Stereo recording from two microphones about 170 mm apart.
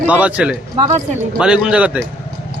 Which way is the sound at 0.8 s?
40° right (ahead or behind).